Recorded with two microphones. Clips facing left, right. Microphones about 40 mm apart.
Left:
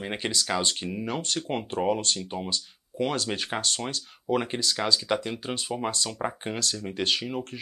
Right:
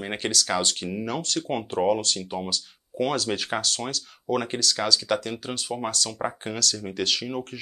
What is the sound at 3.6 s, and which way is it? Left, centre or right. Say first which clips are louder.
Speech: right 1 dB; centre.